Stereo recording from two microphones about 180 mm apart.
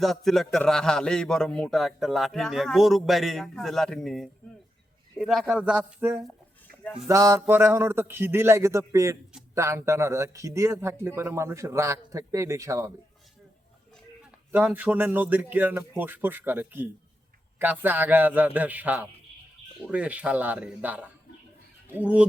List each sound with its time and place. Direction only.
0.0 s a man's voice: centre (ahead or behind); by 12.9 s 15° right (ahead or behind)
14.5 s speech: 10° right (ahead or behind)